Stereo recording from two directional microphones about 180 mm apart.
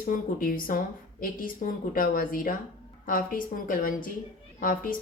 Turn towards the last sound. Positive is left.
turn(degrees=50)  # may be behind; listen again after turning